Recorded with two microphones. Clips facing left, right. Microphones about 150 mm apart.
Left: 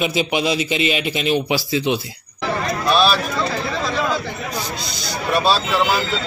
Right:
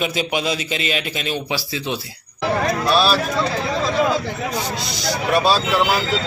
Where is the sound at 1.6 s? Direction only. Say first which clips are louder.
Left 6 dB; 25° left (ahead or behind).